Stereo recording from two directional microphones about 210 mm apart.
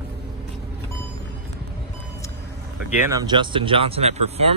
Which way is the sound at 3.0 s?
20° right (ahead or behind).